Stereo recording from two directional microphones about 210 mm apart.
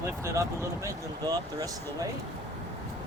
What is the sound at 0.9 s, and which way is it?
Speech, 20° right (ahead or behind).